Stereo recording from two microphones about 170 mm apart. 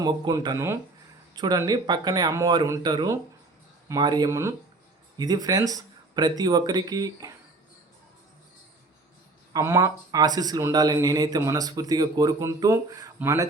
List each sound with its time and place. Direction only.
0.0 s speech: 20° right (ahead or behind)
9.5 s speech: 20° right (ahead or behind)